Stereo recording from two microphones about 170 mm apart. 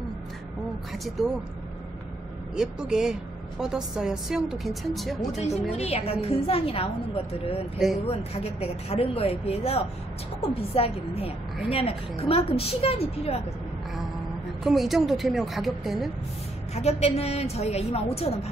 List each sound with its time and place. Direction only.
1.2 s a woman's voice: centre (ahead or behind)
2.5 s a woman's voice: 5° right (ahead or behind)
5.8 s a woman's voice: 35° left (ahead or behind)
8.1 s a woman's voice: 35° left (ahead or behind)
14.6 s a woman's voice: centre (ahead or behind)
16.7 s a woman's voice: 40° left (ahead or behind)